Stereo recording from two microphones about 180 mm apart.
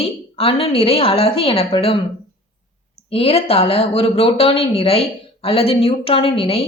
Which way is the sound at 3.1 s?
30° left (ahead or behind).